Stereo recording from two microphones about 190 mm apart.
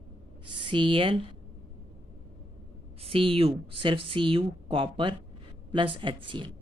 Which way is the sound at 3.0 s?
30° right (ahead or behind).